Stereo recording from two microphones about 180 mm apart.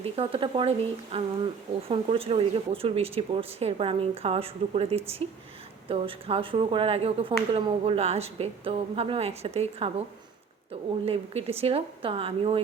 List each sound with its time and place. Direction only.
0.0 s speech: 30° right (ahead or behind)
11.0 s speech: 35° right (ahead or behind)